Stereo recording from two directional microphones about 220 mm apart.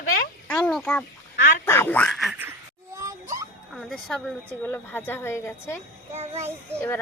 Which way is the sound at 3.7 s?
5° left (ahead or behind).